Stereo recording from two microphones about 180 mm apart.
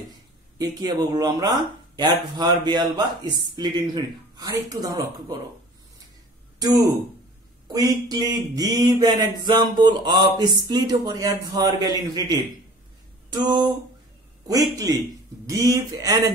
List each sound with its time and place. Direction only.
0.6 s speech: 20° right (ahead or behind)
7.6 s speech: 20° right (ahead or behind)